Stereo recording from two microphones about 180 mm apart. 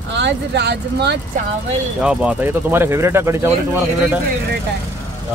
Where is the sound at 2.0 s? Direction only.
5° right (ahead or behind).